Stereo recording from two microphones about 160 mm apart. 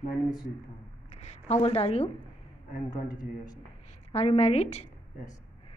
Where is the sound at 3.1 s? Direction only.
25° left (ahead or behind).